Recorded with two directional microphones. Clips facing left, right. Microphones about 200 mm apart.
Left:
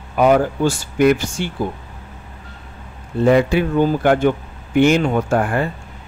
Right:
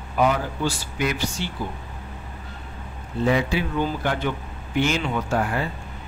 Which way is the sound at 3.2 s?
55° left (ahead or behind).